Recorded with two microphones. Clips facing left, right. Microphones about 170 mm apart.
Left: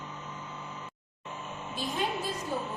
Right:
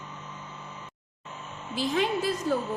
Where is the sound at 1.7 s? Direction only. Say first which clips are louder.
Right 6 dB; 90° right.